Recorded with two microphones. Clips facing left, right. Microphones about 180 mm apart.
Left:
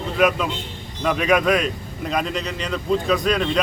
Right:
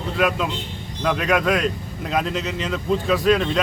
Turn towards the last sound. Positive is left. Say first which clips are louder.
# right 2 dB
turn(degrees=0)  # may be behind; listen again after turning